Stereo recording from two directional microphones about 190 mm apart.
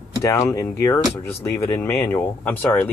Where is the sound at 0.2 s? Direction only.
15° left (ahead or behind).